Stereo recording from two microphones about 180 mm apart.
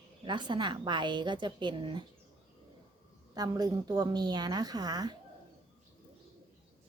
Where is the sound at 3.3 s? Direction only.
20° right (ahead or behind).